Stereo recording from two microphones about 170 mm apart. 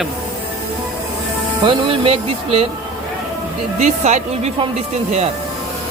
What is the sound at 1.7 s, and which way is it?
Speech, 30° right (ahead or behind).